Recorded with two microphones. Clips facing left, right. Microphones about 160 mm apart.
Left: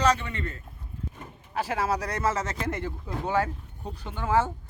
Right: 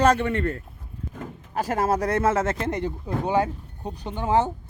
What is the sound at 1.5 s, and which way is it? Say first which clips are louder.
Speech: right 4 dB; 45° right (ahead or behind).